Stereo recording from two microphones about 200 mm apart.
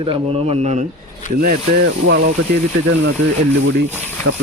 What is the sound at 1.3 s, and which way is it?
Speech, 45° right (ahead or behind).